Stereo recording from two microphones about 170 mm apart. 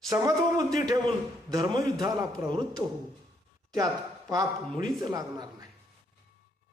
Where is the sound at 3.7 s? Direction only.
20° right (ahead or behind).